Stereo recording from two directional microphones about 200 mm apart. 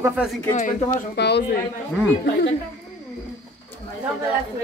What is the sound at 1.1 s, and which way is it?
Speech, 55° left (ahead or behind).